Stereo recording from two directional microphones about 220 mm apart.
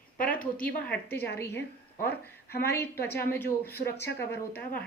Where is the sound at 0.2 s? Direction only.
40° left (ahead or behind).